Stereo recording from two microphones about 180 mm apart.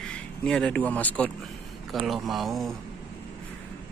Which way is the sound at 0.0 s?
5° left (ahead or behind).